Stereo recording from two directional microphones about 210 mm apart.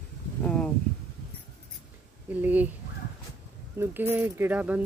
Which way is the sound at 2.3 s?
10° right (ahead or behind).